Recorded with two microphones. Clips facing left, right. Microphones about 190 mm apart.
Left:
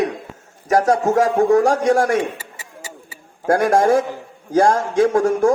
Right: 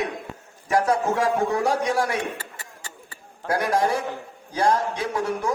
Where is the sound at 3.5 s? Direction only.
50° left (ahead or behind).